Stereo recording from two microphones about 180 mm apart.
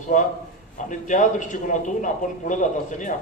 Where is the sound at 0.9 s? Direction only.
45° left (ahead or behind).